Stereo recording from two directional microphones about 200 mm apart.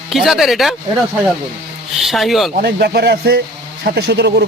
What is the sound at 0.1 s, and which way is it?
Speech, centre (ahead or behind).